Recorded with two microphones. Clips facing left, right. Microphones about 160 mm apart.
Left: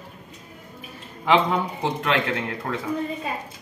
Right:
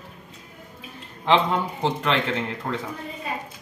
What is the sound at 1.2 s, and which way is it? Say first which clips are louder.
Speech: left 1 dB; 5° left (ahead or behind).